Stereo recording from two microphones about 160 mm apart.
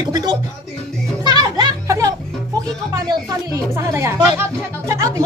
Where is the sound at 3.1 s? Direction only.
20° right (ahead or behind).